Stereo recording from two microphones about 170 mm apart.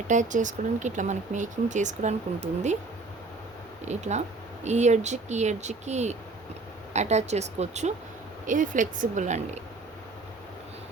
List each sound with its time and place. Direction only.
0.1 s speech: 45° right (ahead or behind)
3.8 s speech: 40° right (ahead or behind)